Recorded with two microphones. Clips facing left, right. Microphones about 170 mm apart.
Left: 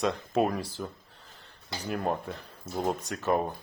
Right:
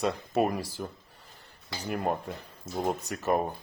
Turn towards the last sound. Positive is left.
turn(degrees=-10)  # may be behind; listen again after turning